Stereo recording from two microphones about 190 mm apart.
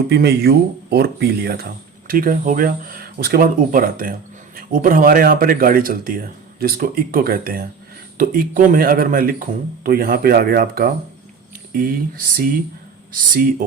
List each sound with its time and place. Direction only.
0.1 s speech: 55° right (ahead or behind)